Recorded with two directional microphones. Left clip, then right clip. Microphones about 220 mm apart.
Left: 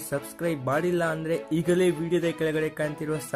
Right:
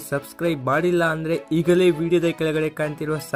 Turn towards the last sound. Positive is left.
turn(degrees=-20)  # may be behind; listen again after turning